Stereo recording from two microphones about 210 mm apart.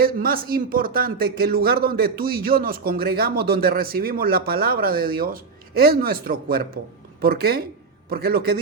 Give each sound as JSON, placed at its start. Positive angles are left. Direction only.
{"t": 0.0, "sound": "speech", "side_deg": -45}